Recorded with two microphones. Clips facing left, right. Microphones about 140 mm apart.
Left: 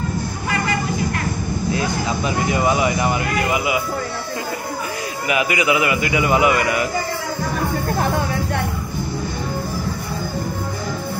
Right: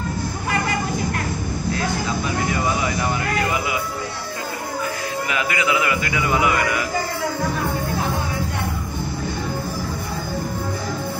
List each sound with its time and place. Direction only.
1.7 s vehicle: 15° left (ahead or behind)
5.3 s a man's voice: 15° left (ahead or behind)